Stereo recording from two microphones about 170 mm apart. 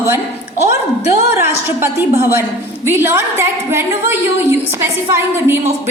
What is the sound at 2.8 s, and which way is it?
A woman's voice, 15° right (ahead or behind).